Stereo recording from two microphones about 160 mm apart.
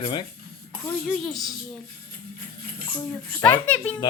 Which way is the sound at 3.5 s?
10° left (ahead or behind).